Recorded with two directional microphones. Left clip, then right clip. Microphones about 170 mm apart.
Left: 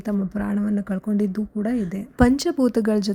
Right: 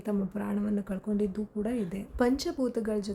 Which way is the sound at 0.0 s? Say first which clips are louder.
Left 6 dB; 25° left (ahead or behind).